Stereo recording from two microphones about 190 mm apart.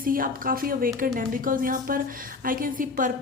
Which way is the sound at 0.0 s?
50° right (ahead or behind).